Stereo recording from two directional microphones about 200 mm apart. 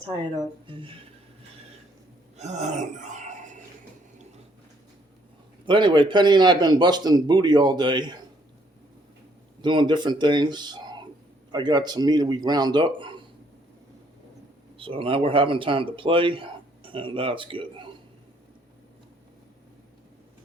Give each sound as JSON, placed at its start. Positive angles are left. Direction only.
{"t": 0.7, "sound": "a man's voice", "side_deg": -25}
{"t": 2.4, "sound": "a sound", "side_deg": -35}
{"t": 5.6, "sound": "a man's voice", "side_deg": -25}
{"t": 9.6, "sound": "a man's voice", "side_deg": -25}
{"t": 14.8, "sound": "a man's voice", "side_deg": -25}